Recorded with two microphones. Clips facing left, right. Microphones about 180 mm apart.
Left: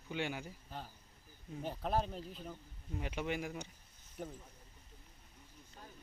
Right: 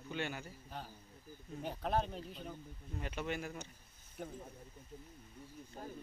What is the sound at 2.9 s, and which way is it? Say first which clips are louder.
Speech: left 2 dB; 15° left (ahead or behind).